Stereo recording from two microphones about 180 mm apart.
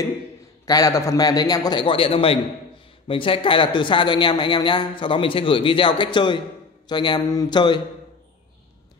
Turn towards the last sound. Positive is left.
turn(degrees=25)  # may be behind; listen again after turning